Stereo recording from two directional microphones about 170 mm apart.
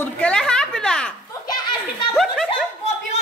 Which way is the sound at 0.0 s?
5° left (ahead or behind).